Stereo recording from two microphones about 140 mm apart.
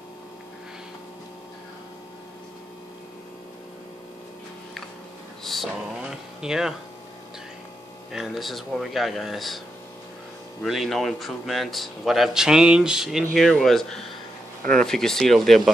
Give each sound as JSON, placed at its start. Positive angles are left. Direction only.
{"t": 5.4, "sound": "a sound", "side_deg": 0}
{"t": 8.1, "sound": "a man's voice", "side_deg": 0}
{"t": 10.6, "sound": "a man's voice", "side_deg": 0}
{"t": 14.6, "sound": "speech", "side_deg": -85}
{"t": 14.9, "sound": "a man's voice", "side_deg": 5}